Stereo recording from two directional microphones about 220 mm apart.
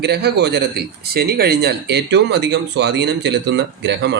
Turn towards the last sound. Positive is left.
turn(degrees=-50)  # may be behind; listen again after turning